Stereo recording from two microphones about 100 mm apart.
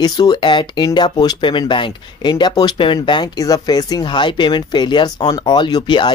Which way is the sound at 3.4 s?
40° left (ahead or behind).